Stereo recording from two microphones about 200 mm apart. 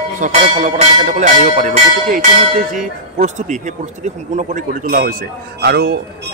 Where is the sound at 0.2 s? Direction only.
40° right (ahead or behind).